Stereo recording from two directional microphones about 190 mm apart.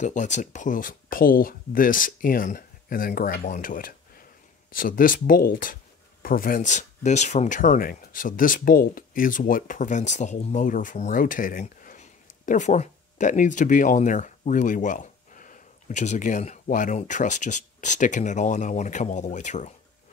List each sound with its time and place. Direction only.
0.0 s speech: 40° left (ahead or behind)